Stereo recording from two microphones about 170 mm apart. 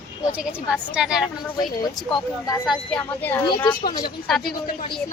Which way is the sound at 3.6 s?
25° left (ahead or behind).